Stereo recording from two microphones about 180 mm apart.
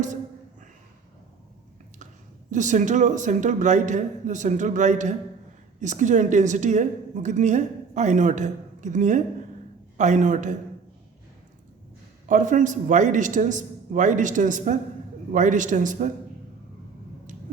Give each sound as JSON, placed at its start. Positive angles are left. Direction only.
{"t": 2.5, "sound": "a woman's voice", "side_deg": -45}
{"t": 12.3, "sound": "a woman's voice", "side_deg": -45}